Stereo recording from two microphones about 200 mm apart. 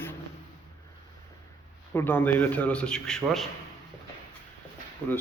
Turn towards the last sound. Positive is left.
turn(degrees=10)  # may be behind; listen again after turning